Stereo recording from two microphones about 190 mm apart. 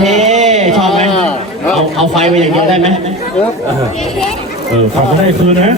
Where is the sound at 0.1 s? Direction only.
40° right (ahead or behind).